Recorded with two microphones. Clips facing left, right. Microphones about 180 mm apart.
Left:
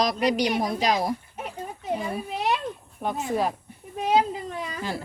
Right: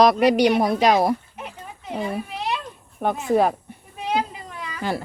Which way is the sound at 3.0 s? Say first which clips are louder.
Right 6 dB; 60° right (ahead or behind).